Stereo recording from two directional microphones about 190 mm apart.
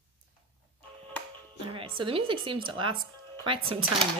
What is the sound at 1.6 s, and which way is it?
Music, 25° right (ahead or behind).